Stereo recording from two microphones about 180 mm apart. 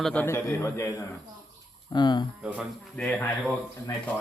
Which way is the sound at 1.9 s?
25° left (ahead or behind).